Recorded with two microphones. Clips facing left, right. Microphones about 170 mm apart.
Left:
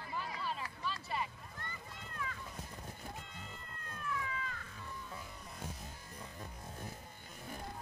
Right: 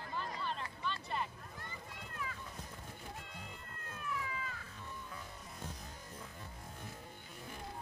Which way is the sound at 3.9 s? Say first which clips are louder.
Left 1 dB; 5° right (ahead or behind).